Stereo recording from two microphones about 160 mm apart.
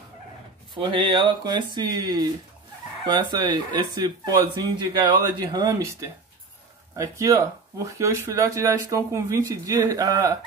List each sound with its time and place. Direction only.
0.7 s speech: 30° right (ahead or behind)